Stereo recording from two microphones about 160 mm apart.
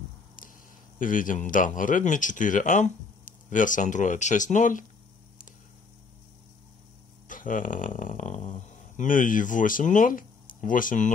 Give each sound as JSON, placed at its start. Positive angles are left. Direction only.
{"t": 0.9, "sound": "speech", "side_deg": 55}
{"t": 7.2, "sound": "speech", "side_deg": 55}